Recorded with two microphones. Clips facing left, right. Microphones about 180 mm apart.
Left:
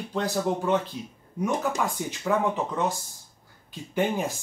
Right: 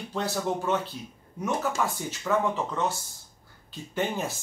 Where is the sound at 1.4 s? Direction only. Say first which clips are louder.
Left 2 dB; 15° left (ahead or behind).